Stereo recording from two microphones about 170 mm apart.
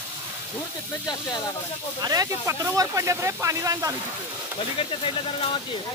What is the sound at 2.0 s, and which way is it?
Speech, 20° right (ahead or behind).